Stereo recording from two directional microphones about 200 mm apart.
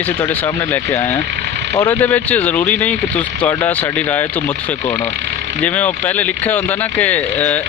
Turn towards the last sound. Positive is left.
turn(degrees=10)  # may be behind; listen again after turning